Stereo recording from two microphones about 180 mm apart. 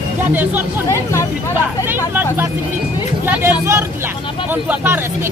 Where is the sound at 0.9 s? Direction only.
15° left (ahead or behind).